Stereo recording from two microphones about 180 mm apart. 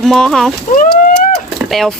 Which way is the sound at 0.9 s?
Centre (ahead or behind).